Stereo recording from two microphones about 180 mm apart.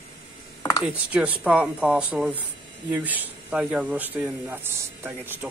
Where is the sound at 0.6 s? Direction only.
15° left (ahead or behind).